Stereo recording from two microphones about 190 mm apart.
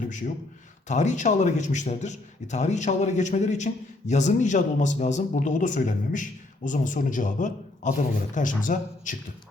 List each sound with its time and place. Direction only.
0.0 s a man's voice: 40° left (ahead or behind)